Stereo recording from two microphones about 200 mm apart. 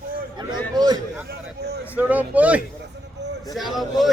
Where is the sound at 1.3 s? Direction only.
55° right (ahead or behind).